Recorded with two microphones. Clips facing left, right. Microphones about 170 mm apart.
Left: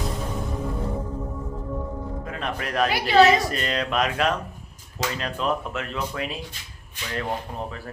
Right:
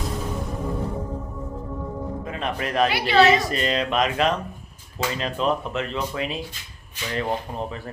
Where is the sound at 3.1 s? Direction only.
40° left (ahead or behind).